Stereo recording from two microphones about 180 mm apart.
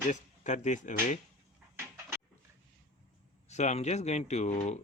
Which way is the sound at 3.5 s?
40° left (ahead or behind).